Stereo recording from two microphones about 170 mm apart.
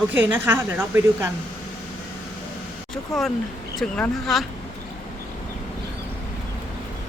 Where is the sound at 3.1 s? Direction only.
Centre (ahead or behind).